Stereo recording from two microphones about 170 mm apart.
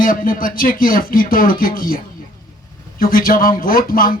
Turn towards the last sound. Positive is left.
turn(degrees=55)  # may be behind; listen again after turning